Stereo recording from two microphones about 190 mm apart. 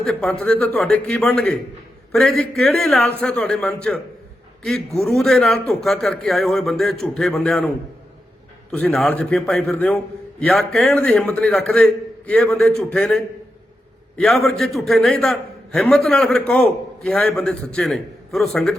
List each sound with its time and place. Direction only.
0.0 s a man's voice: 5° left (ahead or behind)
8.7 s a man's voice: 5° left (ahead or behind)